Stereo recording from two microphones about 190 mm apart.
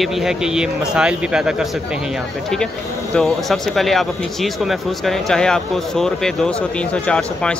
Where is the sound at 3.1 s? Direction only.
Centre (ahead or behind).